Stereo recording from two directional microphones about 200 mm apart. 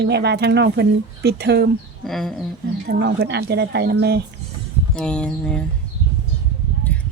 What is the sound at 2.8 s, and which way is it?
Speech, 50° right (ahead or behind).